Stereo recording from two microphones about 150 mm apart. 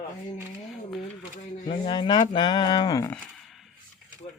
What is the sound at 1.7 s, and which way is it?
Speech, 30° left (ahead or behind).